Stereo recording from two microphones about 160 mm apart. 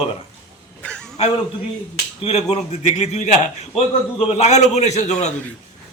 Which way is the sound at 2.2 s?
40° left (ahead or behind).